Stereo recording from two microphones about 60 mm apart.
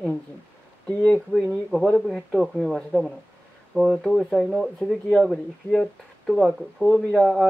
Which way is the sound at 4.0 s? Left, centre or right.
Centre.